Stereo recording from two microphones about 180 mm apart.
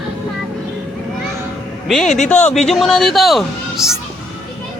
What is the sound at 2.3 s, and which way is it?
Speech, 5° left (ahead or behind).